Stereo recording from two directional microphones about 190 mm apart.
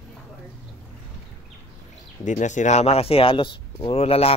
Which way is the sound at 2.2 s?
40° left (ahead or behind).